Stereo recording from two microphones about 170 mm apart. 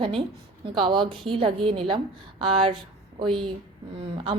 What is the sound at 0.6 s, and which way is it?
A woman's voice, 25° right (ahead or behind).